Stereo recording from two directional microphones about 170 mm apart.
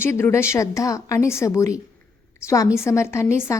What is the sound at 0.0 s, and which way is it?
A woman's voice, 15° left (ahead or behind).